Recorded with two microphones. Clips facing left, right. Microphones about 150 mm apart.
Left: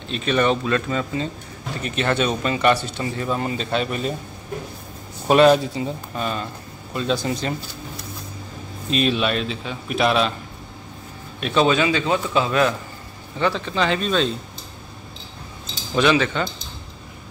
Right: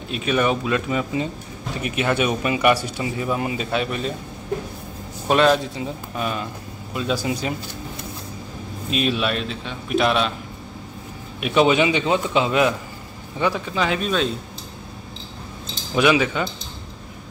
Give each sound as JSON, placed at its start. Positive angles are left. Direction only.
{"t": 0.1, "sound": "speech", "side_deg": -10}
{"t": 5.3, "sound": "a man's voice", "side_deg": 5}
{"t": 8.9, "sound": "a man's voice", "side_deg": 0}
{"t": 11.4, "sound": "speech", "side_deg": -15}
{"t": 15.9, "sound": "speech", "side_deg": -10}